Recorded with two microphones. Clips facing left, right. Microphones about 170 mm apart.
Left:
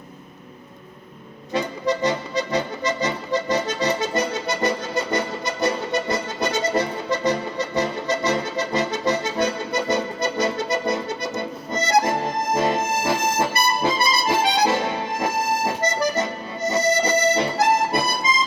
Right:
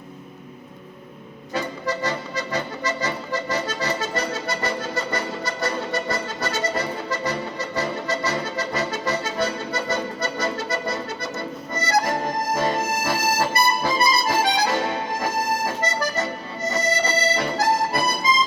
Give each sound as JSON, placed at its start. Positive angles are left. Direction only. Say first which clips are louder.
{"t": 1.5, "sound": "music", "louder": "left 3 dB", "side_deg": 20}
{"t": 15.2, "sound": "accordion", "louder": "left 3 dB", "side_deg": 20}
{"t": 16.6, "sound": "music", "louder": "left 3 dB", "side_deg": 20}